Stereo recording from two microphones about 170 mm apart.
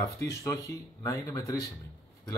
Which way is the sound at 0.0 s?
20° left (ahead or behind).